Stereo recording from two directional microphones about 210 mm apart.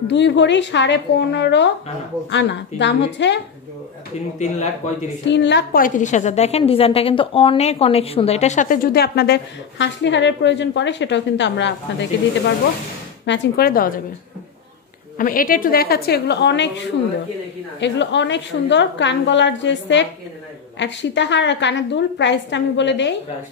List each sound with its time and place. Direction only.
0.1 s a woman's voice: 55° left (ahead or behind)
5.2 s a woman's voice: 55° left (ahead or behind)
13.2 s a woman's voice: 50° left (ahead or behind)
15.1 s a woman's voice: 40° left (ahead or behind); by 23.1 s 55° left (ahead or behind)